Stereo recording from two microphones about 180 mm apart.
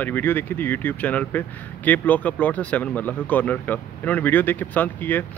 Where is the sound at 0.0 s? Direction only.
10° left (ahead or behind).